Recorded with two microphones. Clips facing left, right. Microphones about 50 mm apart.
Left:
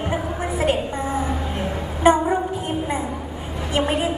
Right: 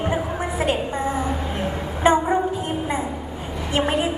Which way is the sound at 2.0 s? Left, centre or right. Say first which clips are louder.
Left 1 dB; right.